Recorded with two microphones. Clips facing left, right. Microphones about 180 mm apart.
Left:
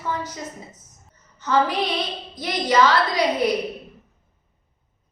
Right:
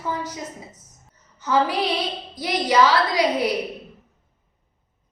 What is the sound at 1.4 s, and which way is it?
A woman's voice, 10° right (ahead or behind).